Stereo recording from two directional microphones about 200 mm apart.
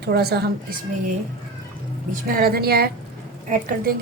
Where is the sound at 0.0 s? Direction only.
55° right (ahead or behind).